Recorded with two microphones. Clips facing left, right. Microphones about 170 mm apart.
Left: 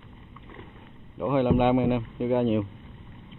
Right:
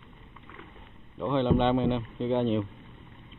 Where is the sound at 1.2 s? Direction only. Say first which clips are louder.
Left 3 dB; 10° left (ahead or behind).